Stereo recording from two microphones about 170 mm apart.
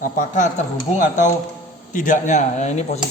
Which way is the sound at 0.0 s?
50° left (ahead or behind).